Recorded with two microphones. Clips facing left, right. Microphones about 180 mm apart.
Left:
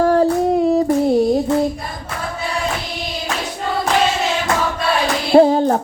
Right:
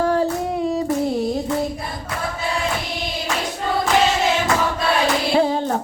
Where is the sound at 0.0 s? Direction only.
45° left (ahead or behind).